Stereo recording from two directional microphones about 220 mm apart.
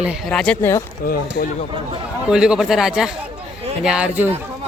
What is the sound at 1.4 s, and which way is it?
Speech, 45° left (ahead or behind).